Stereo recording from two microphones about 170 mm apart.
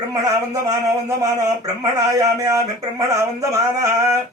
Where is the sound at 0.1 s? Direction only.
20° right (ahead or behind).